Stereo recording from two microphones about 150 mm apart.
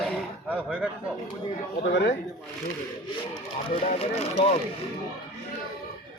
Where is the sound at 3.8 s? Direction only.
45° left (ahead or behind).